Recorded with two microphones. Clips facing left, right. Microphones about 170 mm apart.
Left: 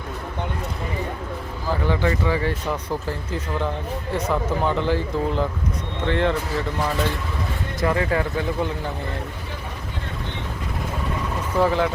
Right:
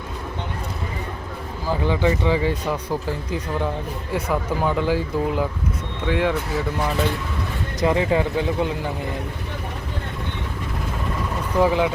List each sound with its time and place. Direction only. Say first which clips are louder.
1.7 s speech: right 2 dB; 15° right (ahead or behind)
7.8 s speech: right 2 dB; 20° right (ahead or behind)
11.5 s speech: right 1 dB; 15° right (ahead or behind)